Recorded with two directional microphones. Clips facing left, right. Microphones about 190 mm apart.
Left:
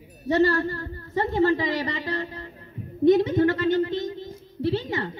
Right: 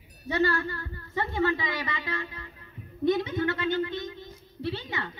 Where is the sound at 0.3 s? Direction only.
40° left (ahead or behind).